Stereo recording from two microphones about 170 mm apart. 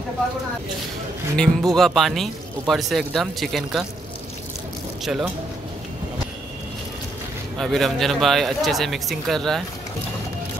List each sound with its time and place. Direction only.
1.3 s speech: 5° left (ahead or behind)
7.5 s speech: centre (ahead or behind)